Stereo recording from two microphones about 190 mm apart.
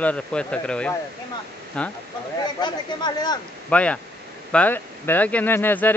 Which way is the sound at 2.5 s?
20° left (ahead or behind).